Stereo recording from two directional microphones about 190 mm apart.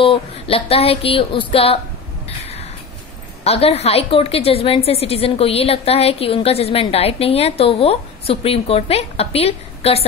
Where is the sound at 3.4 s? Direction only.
30° left (ahead or behind).